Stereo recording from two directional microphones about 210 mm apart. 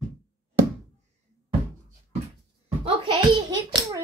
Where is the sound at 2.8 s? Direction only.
25° right (ahead or behind).